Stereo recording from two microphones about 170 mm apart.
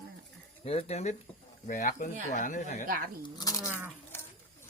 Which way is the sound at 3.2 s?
20° left (ahead or behind).